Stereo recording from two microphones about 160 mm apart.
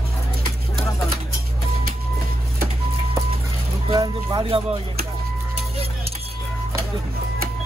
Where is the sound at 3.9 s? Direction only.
25° right (ahead or behind).